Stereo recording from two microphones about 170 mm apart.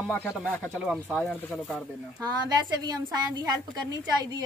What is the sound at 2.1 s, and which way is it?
A woman's voice, 20° right (ahead or behind).